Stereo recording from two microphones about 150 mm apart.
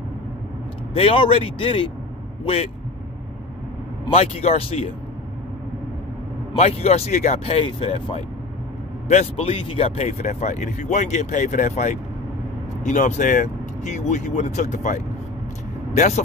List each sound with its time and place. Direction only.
0.9 s speech: 35° left (ahead or behind)
4.1 s speech: 45° left (ahead or behind)
6.5 s speech: 45° left (ahead or behind)